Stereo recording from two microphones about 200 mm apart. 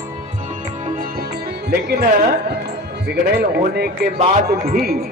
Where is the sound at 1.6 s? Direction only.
50° right (ahead or behind).